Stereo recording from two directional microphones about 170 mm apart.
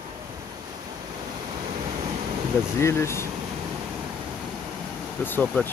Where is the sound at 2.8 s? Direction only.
15° left (ahead or behind).